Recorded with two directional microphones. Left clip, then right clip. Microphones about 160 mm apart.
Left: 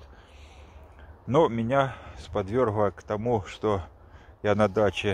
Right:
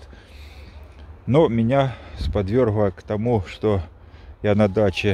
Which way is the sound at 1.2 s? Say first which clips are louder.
Right 5 dB; 35° right (ahead or behind).